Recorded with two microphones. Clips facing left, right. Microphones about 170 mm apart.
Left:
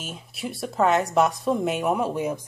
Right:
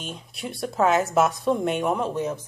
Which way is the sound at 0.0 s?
5° left (ahead or behind).